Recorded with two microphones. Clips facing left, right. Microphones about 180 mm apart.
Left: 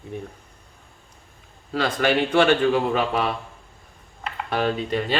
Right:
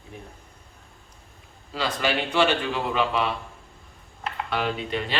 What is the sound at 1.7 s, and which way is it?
A man's voice, 55° left (ahead or behind).